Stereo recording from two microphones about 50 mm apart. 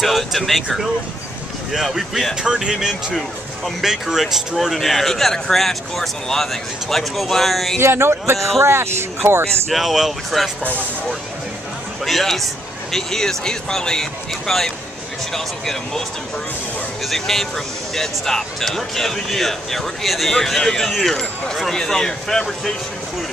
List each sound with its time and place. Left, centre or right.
0.0 s speech: centre
1.7 s speech: centre
2.4 s speech: centre
7.8 s speech: right
9.7 s speech: centre
12.0 s speech: centre
17.1 s speech: centre